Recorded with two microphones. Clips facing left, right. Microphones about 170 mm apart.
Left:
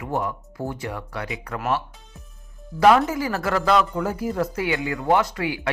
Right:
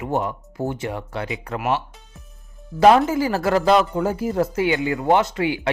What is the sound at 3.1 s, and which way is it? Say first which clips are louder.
Speech: right 4 dB; 30° right (ahead or behind).